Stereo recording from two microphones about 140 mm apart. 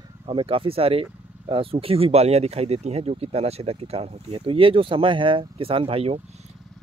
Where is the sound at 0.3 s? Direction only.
40° right (ahead or behind).